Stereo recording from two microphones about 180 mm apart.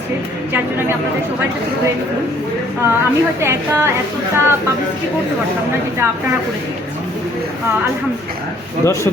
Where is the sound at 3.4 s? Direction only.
15° right (ahead or behind).